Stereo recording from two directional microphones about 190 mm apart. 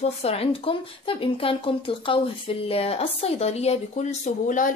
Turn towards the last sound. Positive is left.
turn(degrees=45)  # may be behind; listen again after turning